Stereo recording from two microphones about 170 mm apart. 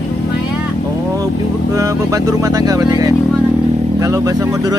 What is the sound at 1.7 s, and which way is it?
Speech, 20° right (ahead or behind).